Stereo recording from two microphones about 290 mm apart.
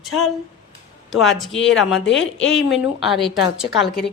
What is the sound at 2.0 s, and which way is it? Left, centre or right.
Speech, left.